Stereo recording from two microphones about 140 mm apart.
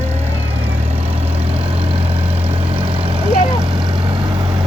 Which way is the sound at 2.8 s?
40° right (ahead or behind).